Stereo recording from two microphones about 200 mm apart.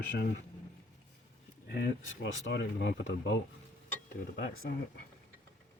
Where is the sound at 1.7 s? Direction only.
65° left (ahead or behind).